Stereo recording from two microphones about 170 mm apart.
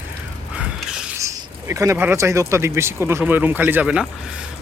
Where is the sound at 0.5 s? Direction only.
5° right (ahead or behind).